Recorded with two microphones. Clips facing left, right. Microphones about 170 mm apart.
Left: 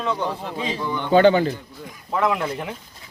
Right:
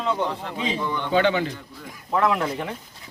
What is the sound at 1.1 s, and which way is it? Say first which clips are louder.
Speech: left 7 dB; 40° left (ahead or behind).